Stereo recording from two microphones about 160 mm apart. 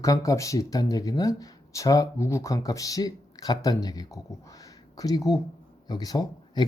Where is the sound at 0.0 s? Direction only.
20° left (ahead or behind).